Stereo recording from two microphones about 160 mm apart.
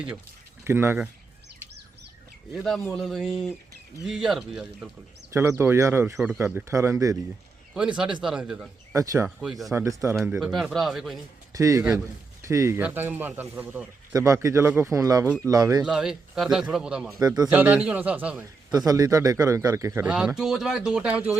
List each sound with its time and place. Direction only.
0.6 s speech: 15° right (ahead or behind)
2.5 s a man's voice: centre (ahead or behind)
5.3 s a man's voice: 15° right (ahead or behind)
6.1 s a man's voice: 5° right (ahead or behind); by 7.2 s 20° right (ahead or behind)
7.7 s a man's voice: 5° right (ahead or behind)
8.9 s speech: 20° right (ahead or behind)
9.2 s a man's voice: 5° right (ahead or behind)
9.7 s speech: 20° right (ahead or behind)
10.4 s a man's voice: centre (ahead or behind)
11.5 s a man's voice: 20° right (ahead or behind)
15.8 s a man's voice: 5° right (ahead or behind)
17.2 s speech: 25° right (ahead or behind)
17.5 s a man's voice: 10° right (ahead or behind)
18.9 s a man's voice: 20° right (ahead or behind)